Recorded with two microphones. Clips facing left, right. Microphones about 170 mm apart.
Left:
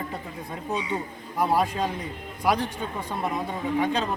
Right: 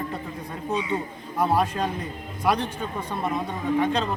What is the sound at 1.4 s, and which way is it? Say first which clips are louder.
Speech: right 1 dB; centre (ahead or behind).